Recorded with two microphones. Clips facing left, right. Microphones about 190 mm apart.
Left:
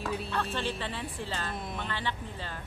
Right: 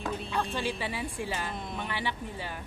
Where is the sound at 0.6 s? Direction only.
10° right (ahead or behind).